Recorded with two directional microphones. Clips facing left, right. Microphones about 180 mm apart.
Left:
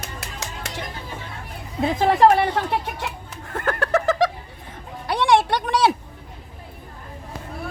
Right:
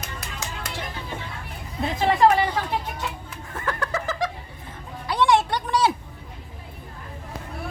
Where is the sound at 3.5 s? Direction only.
65° left (ahead or behind).